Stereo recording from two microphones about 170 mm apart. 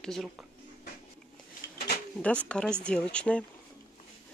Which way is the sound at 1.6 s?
70° left (ahead or behind).